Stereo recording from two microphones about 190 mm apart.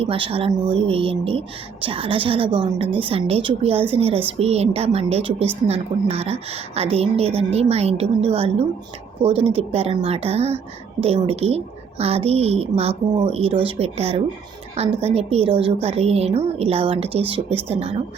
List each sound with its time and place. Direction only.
0.0 s a woman's voice: 30° right (ahead or behind)